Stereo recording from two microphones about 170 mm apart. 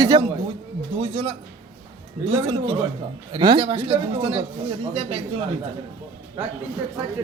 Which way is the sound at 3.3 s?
30° right (ahead or behind).